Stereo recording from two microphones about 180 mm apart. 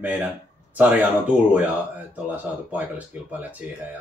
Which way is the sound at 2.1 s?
10° right (ahead or behind).